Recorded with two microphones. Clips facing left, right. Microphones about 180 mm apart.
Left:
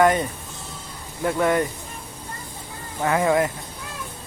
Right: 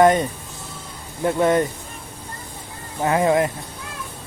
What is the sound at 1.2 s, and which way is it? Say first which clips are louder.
Speech: right 3 dB; 20° right (ahead or behind).